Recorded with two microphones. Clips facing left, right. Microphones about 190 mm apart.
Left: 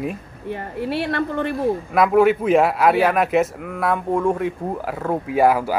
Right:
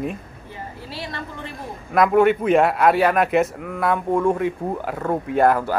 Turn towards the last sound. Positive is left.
turn(degrees=5)  # may be behind; listen again after turning